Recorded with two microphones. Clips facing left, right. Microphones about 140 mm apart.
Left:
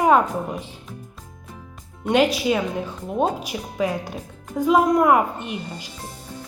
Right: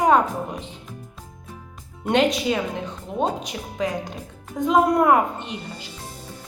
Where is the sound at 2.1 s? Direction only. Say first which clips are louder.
Left 1 dB; 5° left (ahead or behind).